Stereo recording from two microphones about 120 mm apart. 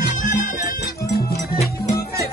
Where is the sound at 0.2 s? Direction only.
90° left.